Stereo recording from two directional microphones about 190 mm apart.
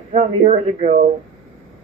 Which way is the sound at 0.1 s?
35° right (ahead or behind).